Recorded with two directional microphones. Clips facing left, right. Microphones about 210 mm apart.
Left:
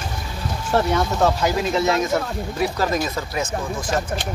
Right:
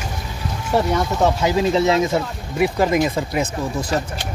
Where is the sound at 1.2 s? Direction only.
20° right (ahead or behind).